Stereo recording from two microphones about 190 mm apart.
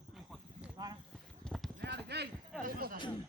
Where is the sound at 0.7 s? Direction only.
20° right (ahead or behind).